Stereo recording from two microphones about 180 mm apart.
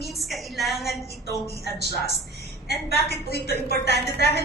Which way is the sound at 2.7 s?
60° left (ahead or behind).